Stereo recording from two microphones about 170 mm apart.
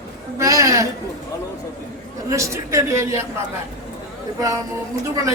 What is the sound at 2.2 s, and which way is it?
A man's voice, 20° right (ahead or behind).